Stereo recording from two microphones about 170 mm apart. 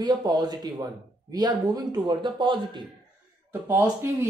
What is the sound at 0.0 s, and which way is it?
A man's voice, 25° right (ahead or behind).